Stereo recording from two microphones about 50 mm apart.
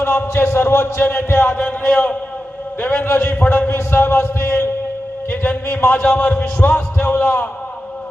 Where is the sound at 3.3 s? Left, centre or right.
Left.